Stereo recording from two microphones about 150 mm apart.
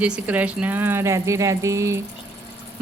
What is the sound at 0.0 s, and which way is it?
Speech, 10° right (ahead or behind).